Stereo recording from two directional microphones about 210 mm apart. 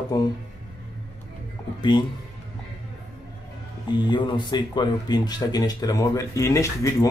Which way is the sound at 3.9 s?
20° left (ahead or behind).